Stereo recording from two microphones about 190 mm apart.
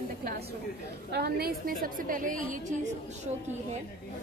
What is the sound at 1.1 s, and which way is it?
A woman's voice, 55° right (ahead or behind).